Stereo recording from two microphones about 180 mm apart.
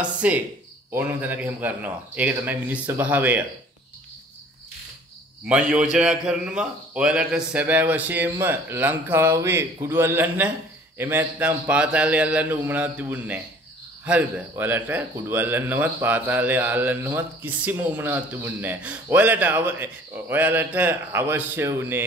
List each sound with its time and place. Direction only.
0.0 s a man's voice: 5° right (ahead or behind)
5.5 s a man's voice: 5° right (ahead or behind)